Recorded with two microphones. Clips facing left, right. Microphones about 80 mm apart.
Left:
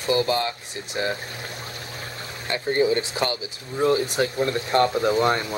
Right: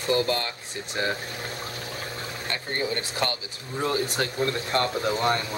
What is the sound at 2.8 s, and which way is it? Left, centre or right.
Speech, centre.